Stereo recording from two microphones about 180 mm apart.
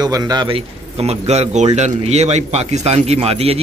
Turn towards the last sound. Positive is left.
turn(degrees=-35)  # may be behind; listen again after turning